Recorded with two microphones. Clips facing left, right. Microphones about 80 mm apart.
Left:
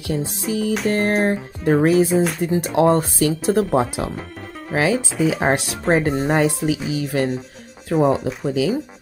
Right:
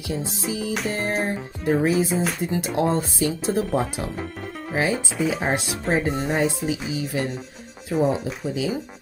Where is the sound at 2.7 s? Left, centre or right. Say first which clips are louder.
Left 7 dB; left.